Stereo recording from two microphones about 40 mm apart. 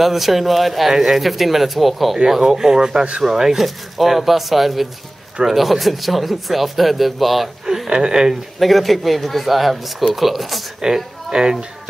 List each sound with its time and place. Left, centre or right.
0.0 s speech: centre
7.6 s a sound: centre
7.9 s speech: centre
8.5 s speech: centre
10.8 s speech: centre